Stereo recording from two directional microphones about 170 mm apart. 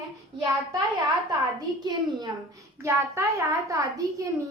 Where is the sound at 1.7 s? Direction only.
25° right (ahead or behind).